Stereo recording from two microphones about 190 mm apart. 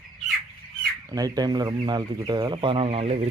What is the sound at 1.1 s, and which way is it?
Speech, 20° right (ahead or behind).